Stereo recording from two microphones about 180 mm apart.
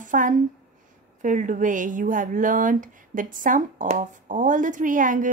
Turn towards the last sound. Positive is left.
turn(degrees=-45)  # may be behind; listen again after turning